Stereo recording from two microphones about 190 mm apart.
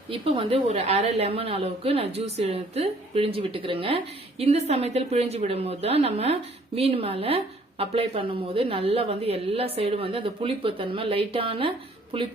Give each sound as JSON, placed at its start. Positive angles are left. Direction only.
{"t": 0.1, "sound": "a woman's voice", "side_deg": -30}